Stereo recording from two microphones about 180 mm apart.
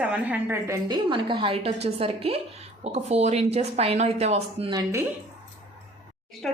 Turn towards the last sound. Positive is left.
turn(degrees=0)  # may be behind; listen again after turning